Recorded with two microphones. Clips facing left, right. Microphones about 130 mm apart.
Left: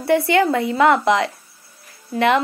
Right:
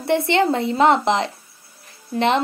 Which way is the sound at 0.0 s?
25° right (ahead or behind).